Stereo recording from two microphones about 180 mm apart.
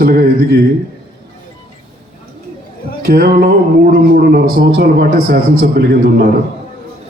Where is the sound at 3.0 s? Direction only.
55° right (ahead or behind).